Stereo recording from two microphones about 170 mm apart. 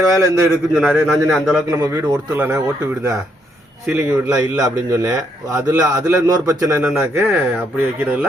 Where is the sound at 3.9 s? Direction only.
10° right (ahead or behind).